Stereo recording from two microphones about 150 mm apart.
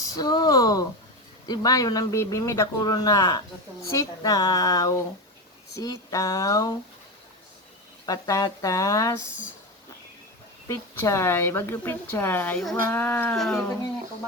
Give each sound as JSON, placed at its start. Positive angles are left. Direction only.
{"t": 0.0, "sound": "a sound", "side_deg": 25}
{"t": 1.5, "sound": "speech", "side_deg": 25}
{"t": 8.0, "sound": "speech", "side_deg": 25}
{"t": 10.7, "sound": "a woman's voice", "side_deg": 20}